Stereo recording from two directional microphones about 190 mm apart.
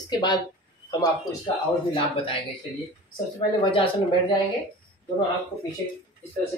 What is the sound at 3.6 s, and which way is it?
Speech, 25° left (ahead or behind).